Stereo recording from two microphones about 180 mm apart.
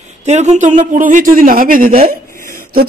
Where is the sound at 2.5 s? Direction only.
50° right (ahead or behind).